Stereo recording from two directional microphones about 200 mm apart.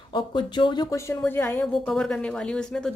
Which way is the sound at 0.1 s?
25° left (ahead or behind).